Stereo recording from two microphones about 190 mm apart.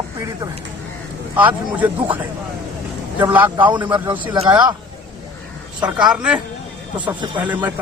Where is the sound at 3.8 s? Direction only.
25° right (ahead or behind).